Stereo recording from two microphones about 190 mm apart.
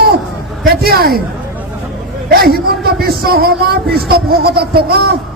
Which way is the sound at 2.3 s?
55° right (ahead or behind).